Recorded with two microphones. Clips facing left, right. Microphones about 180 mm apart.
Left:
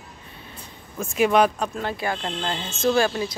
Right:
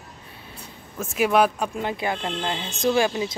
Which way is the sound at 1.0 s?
5° right (ahead or behind).